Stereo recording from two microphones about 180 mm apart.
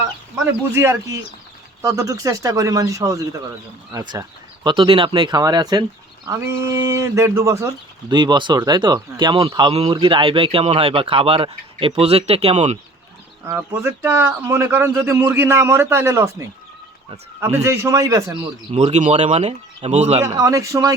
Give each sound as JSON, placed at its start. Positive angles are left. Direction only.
{"t": 0.7, "sound": "speech", "side_deg": -15}
{"t": 13.5, "sound": "speech", "side_deg": -15}
{"t": 18.7, "sound": "speech", "side_deg": -35}
{"t": 20.2, "sound": "speech", "side_deg": -20}